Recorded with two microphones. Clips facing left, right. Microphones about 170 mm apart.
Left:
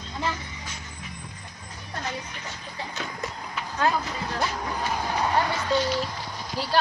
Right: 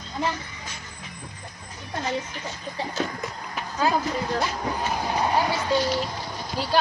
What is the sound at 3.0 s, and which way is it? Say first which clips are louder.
Speech: right 9 dB; 45° right (ahead or behind).